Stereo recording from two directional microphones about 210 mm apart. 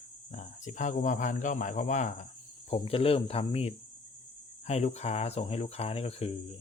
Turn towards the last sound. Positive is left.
turn(degrees=30)  # may be behind; listen again after turning